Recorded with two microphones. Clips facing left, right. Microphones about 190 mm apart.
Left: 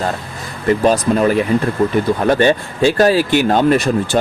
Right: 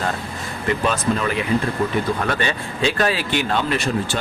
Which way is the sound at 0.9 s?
40° left (ahead or behind).